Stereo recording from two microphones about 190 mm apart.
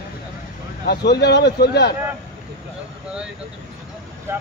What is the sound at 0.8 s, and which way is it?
Speech, 60° left (ahead or behind).